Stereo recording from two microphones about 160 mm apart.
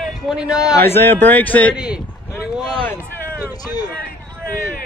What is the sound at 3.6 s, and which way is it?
Speech, 25° left (ahead or behind).